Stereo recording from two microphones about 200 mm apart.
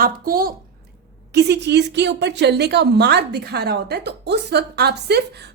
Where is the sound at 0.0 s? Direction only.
45° right (ahead or behind).